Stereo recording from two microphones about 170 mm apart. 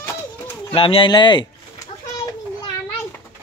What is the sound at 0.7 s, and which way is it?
Speech, 30° left (ahead or behind).